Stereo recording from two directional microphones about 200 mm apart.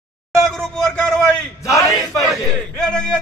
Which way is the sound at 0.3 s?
Centre (ahead or behind).